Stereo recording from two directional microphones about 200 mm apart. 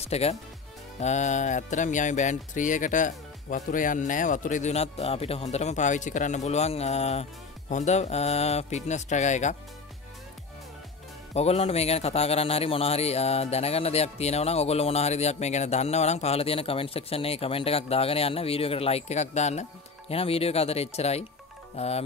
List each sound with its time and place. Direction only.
0.0 s speech: 30° left (ahead or behind)
11.3 s speech: 30° left (ahead or behind)